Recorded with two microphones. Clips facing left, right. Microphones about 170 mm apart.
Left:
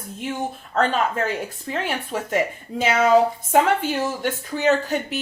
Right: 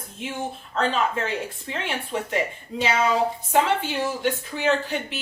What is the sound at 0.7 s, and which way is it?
Speech, 45° left (ahead or behind).